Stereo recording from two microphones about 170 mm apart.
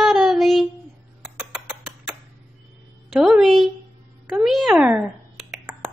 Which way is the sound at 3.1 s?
Centre (ahead or behind).